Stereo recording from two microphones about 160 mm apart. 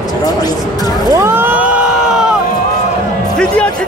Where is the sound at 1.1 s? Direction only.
15° right (ahead or behind).